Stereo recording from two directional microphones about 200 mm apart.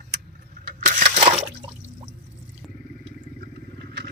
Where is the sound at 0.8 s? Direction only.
35° right (ahead or behind).